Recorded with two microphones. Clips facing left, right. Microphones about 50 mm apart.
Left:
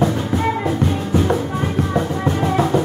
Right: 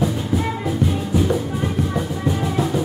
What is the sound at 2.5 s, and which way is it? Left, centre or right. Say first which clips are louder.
Music: left 6 dB; left.